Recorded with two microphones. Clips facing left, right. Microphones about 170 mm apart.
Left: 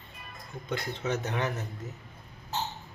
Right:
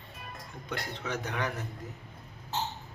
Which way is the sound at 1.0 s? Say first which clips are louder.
Left 3 dB; 25° left (ahead or behind).